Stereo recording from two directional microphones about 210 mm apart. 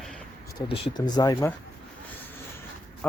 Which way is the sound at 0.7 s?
20° left (ahead or behind).